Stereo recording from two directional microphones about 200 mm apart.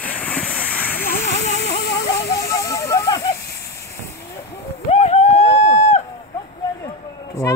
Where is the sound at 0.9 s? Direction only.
50° left (ahead or behind).